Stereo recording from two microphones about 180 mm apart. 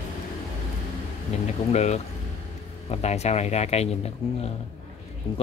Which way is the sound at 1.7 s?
40° left (ahead or behind).